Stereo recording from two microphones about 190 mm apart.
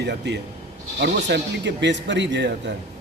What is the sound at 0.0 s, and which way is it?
Speech, 65° right (ahead or behind).